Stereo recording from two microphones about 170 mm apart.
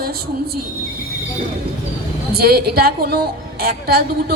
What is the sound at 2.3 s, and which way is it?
A woman's voice, 65° right (ahead or behind).